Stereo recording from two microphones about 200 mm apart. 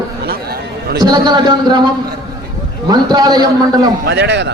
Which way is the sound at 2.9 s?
20° right (ahead or behind).